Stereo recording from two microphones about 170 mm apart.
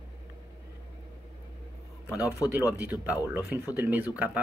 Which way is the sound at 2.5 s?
10° right (ahead or behind).